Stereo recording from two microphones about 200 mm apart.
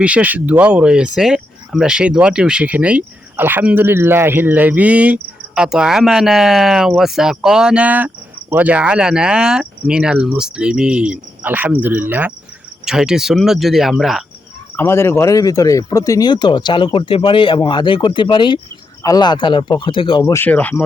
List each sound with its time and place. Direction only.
0.0 s speech: 5° right (ahead or behind)
14.8 s speech: 10° left (ahead or behind)